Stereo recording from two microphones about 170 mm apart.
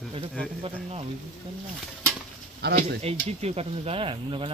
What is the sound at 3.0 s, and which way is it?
Speech, 35° right (ahead or behind).